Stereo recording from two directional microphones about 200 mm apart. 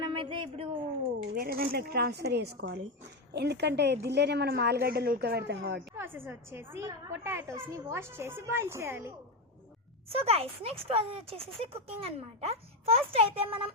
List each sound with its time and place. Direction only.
0.0 s a sound: 25° right (ahead or behind)
1.4 s a woman's voice: 45° right (ahead or behind)
6.0 s a woman's voice: 10° right (ahead or behind)
10.1 s a child's voice: 30° right (ahead or behind)